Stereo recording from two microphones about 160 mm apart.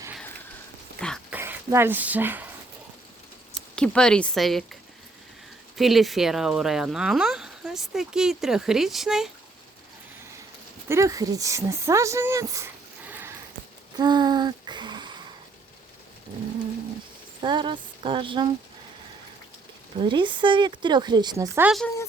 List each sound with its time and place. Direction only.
1.3 s speech: 15° right (ahead or behind)
3.8 s speech: 5° left (ahead or behind)
10.8 s speech: 20° right (ahead or behind)
13.1 s sniff: 15° right (ahead or behind)
13.9 s a sound: 25° right (ahead or behind)
17.4 s speech: 30° right (ahead or behind)
20.0 s speech: 30° right (ahead or behind)